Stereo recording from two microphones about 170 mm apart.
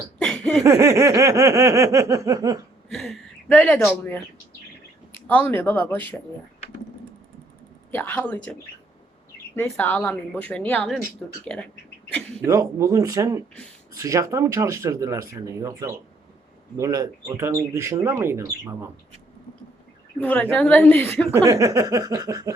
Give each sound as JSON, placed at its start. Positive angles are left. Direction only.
{"t": 0.2, "sound": "a sound", "side_deg": 5}
{"t": 0.6, "sound": "speech", "side_deg": -20}
{"t": 2.9, "sound": "speech", "side_deg": 0}
{"t": 5.1, "sound": "a woman's voice", "side_deg": 10}
{"t": 7.9, "sound": "a woman's voice", "side_deg": 10}
{"t": 9.6, "sound": "a woman's voice", "side_deg": 10}
{"t": 12.5, "sound": "a sound", "side_deg": -20}
{"t": 13.9, "sound": "speech", "side_deg": -20}
{"t": 20.1, "sound": "a woman's voice", "side_deg": 10}
{"t": 21.3, "sound": "a sound", "side_deg": -15}